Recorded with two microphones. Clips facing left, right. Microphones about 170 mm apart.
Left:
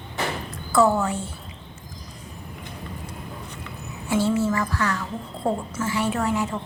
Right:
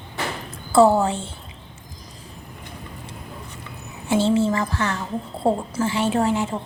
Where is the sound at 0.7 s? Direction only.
30° right (ahead or behind).